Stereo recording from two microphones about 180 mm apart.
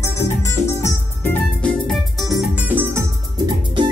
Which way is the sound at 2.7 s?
10° right (ahead or behind).